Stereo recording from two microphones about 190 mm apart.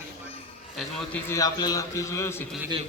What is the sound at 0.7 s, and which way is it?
Speech, 5° left (ahead or behind).